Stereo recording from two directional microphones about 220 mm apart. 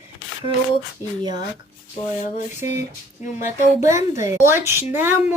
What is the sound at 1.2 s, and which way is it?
Speech, 20° right (ahead or behind).